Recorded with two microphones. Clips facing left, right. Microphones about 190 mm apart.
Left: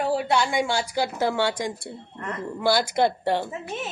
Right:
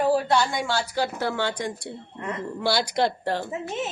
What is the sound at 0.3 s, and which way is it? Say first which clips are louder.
Speech: left 1 dB; 15° left (ahead or behind).